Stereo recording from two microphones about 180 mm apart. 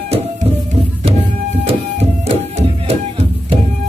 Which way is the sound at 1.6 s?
35° right (ahead or behind).